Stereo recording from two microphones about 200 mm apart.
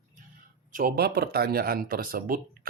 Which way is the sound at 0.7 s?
45° right (ahead or behind).